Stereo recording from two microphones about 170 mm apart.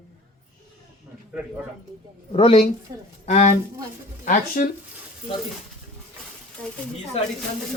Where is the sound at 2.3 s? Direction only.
35° left (ahead or behind).